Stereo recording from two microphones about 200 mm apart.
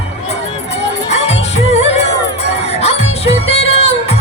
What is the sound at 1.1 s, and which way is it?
Music, 30° left (ahead or behind).